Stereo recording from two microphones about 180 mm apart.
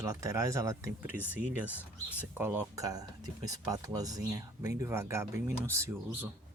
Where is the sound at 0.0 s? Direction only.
15° right (ahead or behind).